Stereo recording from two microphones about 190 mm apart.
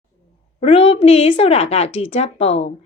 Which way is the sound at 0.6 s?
30° left (ahead or behind).